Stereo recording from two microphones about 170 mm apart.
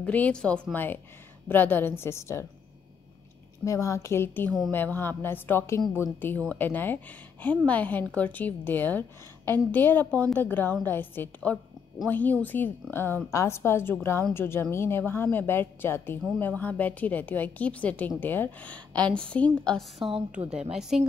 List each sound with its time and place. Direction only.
0.0 s a woman's voice: 10° left (ahead or behind)
3.6 s a woman's voice: 20° left (ahead or behind); by 21.1 s 5° right (ahead or behind)